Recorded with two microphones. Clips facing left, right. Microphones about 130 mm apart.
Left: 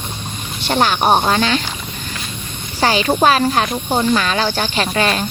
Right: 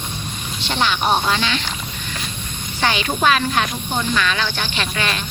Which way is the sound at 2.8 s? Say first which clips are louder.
Left 5 dB; 35° left (ahead or behind).